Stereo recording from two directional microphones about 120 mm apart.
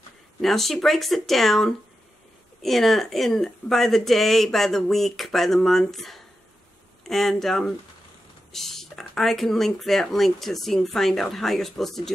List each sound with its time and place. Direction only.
0.4 s speech: centre (ahead or behind)